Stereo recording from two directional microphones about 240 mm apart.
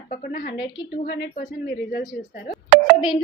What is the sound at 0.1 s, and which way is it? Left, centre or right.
Speech, left.